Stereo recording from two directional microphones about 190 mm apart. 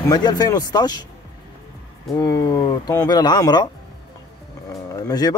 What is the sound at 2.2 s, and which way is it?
Speech, 20° left (ahead or behind).